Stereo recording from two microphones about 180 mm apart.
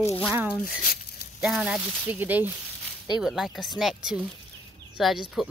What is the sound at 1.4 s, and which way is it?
Speech, 5° right (ahead or behind).